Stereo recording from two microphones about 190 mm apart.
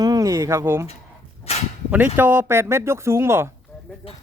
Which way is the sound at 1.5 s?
30° left (ahead or behind).